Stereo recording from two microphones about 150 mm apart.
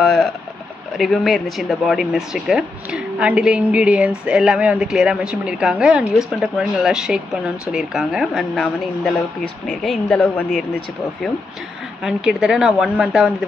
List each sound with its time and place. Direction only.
0.0 s a sound: centre (ahead or behind)
0.9 s speech: centre (ahead or behind)
12.0 s speech: 5° right (ahead or behind)